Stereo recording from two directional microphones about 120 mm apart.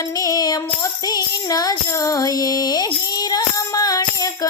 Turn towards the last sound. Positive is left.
turn(degrees=30)  # may be behind; listen again after turning